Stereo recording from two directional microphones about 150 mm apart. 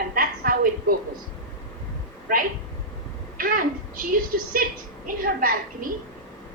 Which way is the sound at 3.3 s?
70° right (ahead or behind).